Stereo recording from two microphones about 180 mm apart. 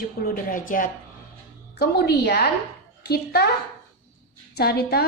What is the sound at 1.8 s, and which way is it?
A woman's voice, 65° left (ahead or behind).